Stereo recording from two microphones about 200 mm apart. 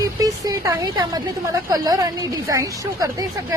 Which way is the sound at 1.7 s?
20° right (ahead or behind).